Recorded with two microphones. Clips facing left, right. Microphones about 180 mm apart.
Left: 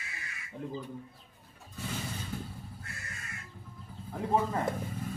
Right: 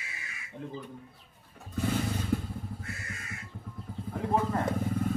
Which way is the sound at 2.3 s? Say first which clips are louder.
Right 11 dB; 70° right (ahead or behind).